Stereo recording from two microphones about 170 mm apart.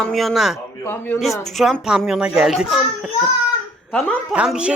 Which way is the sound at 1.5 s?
Centre (ahead or behind).